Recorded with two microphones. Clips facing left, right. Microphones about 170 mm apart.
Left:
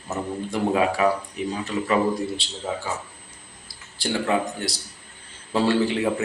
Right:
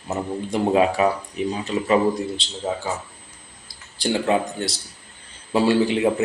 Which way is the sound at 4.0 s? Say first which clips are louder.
Right 3 dB; 20° right (ahead or behind).